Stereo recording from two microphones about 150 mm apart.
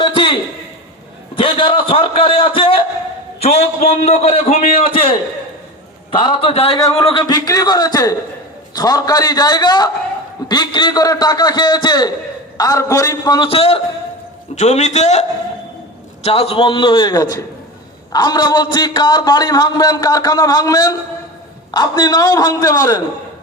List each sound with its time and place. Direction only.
0.0 s a sound: 35° left (ahead or behind)
1.4 s a man's voice: 35° left (ahead or behind)
3.4 s a man's voice: 45° left (ahead or behind)
6.1 s a man's voice: 35° left (ahead or behind)
6.7 s speech: 30° left (ahead or behind)
14.5 s a man's voice: 50° left (ahead or behind); by 23.0 s 25° left (ahead or behind)